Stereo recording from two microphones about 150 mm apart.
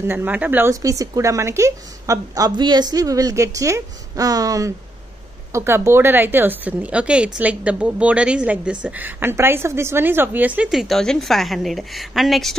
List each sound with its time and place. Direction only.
0.0 s a woman's voice: 15° right (ahead or behind)